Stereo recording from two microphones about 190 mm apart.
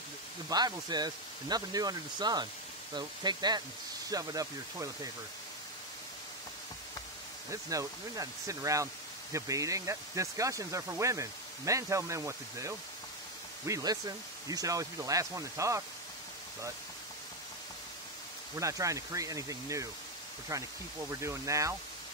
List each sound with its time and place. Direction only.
0.5 s speech: 20° right (ahead or behind)
7.7 s speech: 15° right (ahead or behind)
18.6 s speech: 15° right (ahead or behind)
21.1 s speech: 15° right (ahead or behind)